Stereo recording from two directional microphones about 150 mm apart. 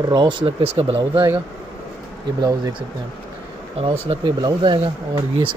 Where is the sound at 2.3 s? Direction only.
25° right (ahead or behind).